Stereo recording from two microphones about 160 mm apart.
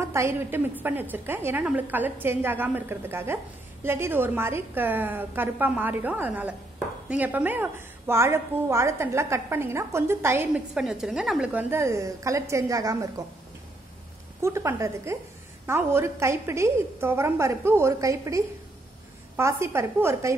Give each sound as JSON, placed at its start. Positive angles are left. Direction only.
{"t": 0.0, "sound": "a woman's voice", "side_deg": -15}
{"t": 14.4, "sound": "a woman's voice", "side_deg": -15}